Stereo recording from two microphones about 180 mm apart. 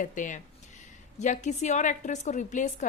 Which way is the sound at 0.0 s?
45° left (ahead or behind).